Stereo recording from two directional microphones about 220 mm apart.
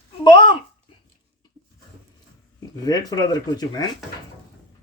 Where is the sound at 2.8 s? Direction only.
15° left (ahead or behind).